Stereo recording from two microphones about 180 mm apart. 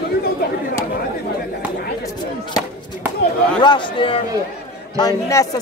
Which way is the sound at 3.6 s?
25° left (ahead or behind).